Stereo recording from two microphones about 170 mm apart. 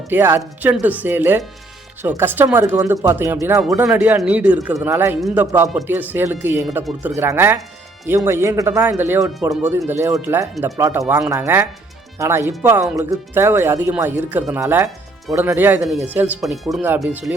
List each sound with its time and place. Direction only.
0.1 s speech: 10° right (ahead or behind)